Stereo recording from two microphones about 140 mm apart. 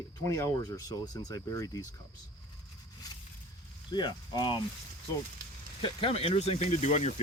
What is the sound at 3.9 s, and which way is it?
Speech, 30° left (ahead or behind).